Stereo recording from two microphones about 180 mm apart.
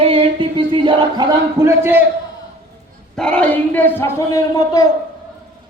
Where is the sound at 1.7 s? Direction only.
15° right (ahead or behind).